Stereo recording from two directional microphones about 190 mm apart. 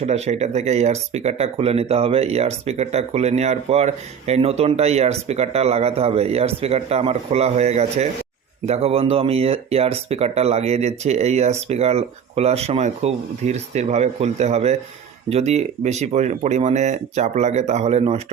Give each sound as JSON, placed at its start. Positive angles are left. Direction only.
{"t": 0.0, "sound": "speech", "side_deg": -35}